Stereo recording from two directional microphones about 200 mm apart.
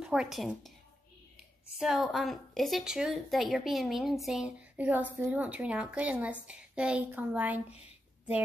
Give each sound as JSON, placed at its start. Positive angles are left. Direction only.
{"t": 0.0, "sound": "a woman's voice", "side_deg": -5}
{"t": 1.8, "sound": "a woman's voice", "side_deg": 0}